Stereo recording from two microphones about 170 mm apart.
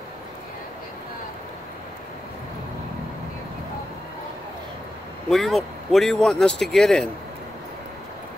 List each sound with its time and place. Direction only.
5.3 s a man's voice: centre (ahead or behind)